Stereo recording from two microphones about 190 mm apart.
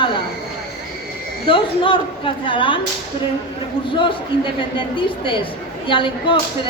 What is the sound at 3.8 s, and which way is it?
A man's voice, 25° left (ahead or behind).